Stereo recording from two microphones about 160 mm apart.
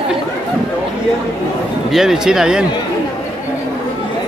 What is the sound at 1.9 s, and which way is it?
Speech, centre (ahead or behind).